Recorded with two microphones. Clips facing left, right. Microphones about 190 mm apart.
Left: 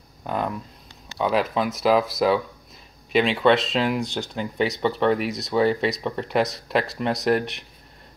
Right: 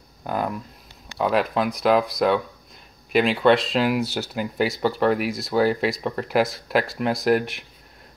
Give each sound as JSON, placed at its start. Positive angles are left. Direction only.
{"t": 0.2, "sound": "speech", "side_deg": -5}